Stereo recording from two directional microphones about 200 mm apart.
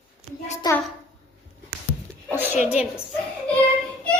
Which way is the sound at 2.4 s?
10° right (ahead or behind).